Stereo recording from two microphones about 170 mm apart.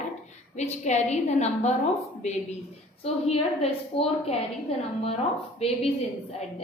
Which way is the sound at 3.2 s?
35° left (ahead or behind).